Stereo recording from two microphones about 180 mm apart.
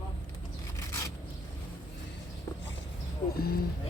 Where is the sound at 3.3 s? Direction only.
55° left (ahead or behind).